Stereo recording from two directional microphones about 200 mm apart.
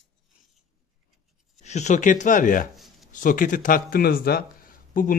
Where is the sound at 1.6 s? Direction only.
35° left (ahead or behind).